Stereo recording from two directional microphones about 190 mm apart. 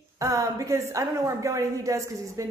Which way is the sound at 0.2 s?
15° right (ahead or behind).